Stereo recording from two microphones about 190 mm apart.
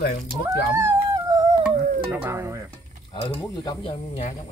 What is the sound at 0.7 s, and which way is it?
Dog, 20° right (ahead or behind).